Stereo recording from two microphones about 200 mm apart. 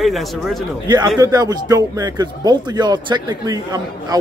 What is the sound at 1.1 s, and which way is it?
A man's voice, 15° right (ahead or behind).